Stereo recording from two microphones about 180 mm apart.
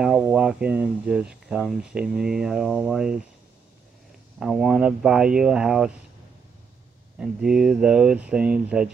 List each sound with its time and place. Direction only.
0.0 s speech: 5° right (ahead or behind)
4.4 s speech: 5° right (ahead or behind)
7.2 s speech: 5° right (ahead or behind)